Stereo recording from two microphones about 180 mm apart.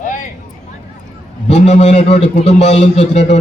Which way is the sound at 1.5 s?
35° left (ahead or behind).